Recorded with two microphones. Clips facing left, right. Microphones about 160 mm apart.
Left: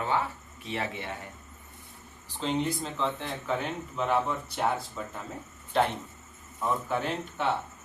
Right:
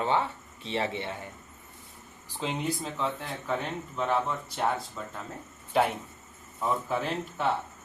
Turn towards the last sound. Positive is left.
turn(degrees=0)  # may be behind; listen again after turning